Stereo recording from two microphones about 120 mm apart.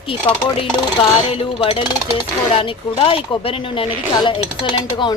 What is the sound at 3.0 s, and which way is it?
Speech, 50° left (ahead or behind).